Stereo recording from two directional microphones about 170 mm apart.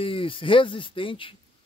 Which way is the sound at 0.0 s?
30° left (ahead or behind).